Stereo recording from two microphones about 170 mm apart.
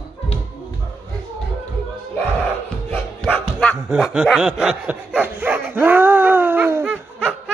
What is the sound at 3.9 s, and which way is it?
Snicker, 5° right (ahead or behind).